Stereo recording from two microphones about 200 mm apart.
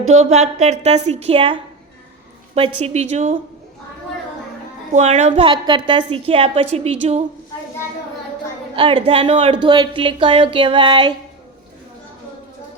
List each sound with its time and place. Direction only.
0.1 s a woman's voice: 35° right (ahead or behind)
2.6 s a woman's voice: 30° right (ahead or behind)
4.9 s speech: 35° right (ahead or behind)
8.7 s speech: 25° right (ahead or behind)